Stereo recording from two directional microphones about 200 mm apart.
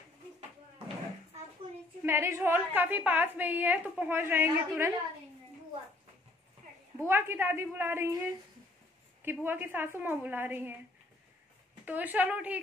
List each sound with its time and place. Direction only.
2.0 s a woman's voice: 15° right (ahead or behind)
7.0 s a woman's voice: 10° right (ahead or behind)
9.2 s a woman's voice: 10° right (ahead or behind)
11.8 s a woman's voice: 10° right (ahead or behind)